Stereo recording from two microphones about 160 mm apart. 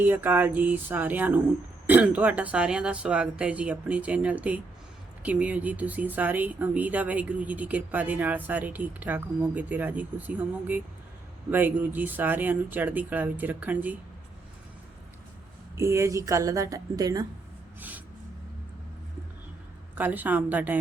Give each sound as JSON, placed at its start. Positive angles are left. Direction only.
{"t": 0.0, "sound": "speech", "side_deg": -10}
{"t": 15.8, "sound": "a woman's voice", "side_deg": -15}
{"t": 17.7, "sound": "gasp", "side_deg": -10}
{"t": 20.0, "sound": "speech", "side_deg": -10}